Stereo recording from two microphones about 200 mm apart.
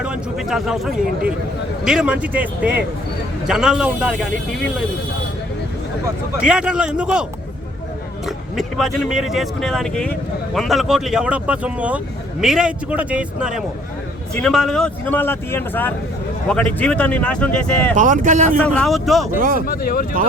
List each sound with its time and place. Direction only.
0.0 s speech: 5° right (ahead or behind)
6.3 s speech: 5° right (ahead or behind)
8.5 s speech: centre (ahead or behind)
17.9 s speech: 40° right (ahead or behind)
18.6 s speech: 5° left (ahead or behind)
19.4 s speech: 45° right (ahead or behind)
19.6 s speech: 45° left (ahead or behind)